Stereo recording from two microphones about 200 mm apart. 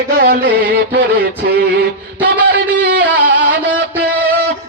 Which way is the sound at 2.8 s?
50° right (ahead or behind).